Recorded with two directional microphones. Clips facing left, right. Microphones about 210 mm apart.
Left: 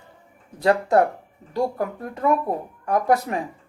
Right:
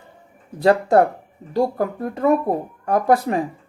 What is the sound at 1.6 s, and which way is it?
Speech, 35° right (ahead or behind).